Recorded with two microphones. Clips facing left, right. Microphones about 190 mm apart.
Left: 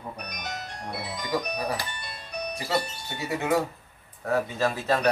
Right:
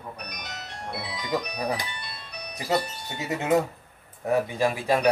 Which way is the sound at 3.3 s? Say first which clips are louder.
Right 2 dB; 20° right (ahead or behind).